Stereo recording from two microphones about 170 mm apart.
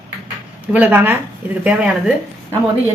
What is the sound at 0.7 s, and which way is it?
A woman's voice, 10° right (ahead or behind).